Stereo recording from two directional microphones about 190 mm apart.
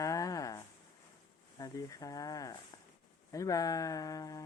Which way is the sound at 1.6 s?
20° left (ahead or behind).